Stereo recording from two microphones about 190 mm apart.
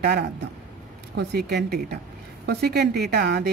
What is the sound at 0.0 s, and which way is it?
A woman's voice, 60° right (ahead or behind).